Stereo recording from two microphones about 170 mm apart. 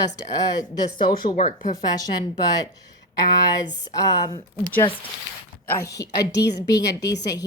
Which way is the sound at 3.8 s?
20° left (ahead or behind).